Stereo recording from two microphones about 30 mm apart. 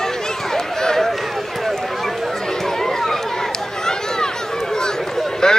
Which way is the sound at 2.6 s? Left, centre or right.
Centre.